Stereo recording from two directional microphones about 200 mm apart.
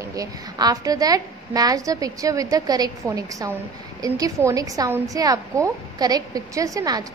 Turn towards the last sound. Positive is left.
turn(degrees=-20)  # may be behind; listen again after turning